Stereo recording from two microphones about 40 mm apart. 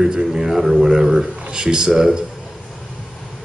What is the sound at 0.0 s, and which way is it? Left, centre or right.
Speech, centre.